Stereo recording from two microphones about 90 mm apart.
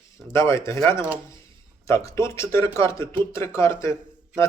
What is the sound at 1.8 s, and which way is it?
Speech, 35° left (ahead or behind).